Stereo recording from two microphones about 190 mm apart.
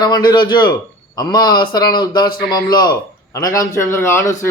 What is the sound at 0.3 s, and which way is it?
A man's voice, 25° left (ahead or behind).